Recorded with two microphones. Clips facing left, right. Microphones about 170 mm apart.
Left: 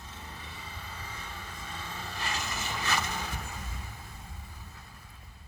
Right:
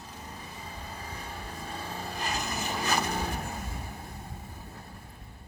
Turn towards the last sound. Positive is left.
turn(degrees=-55)  # may be behind; listen again after turning